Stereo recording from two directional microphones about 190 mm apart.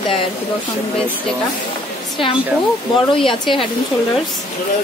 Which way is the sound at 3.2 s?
25° left (ahead or behind).